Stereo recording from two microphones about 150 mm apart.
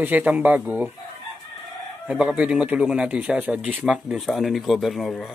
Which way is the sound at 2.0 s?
5° right (ahead or behind).